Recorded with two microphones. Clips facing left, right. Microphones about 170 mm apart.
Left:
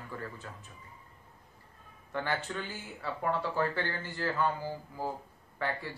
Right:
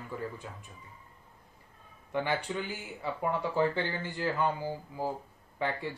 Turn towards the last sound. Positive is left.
turn(degrees=-20)  # may be behind; listen again after turning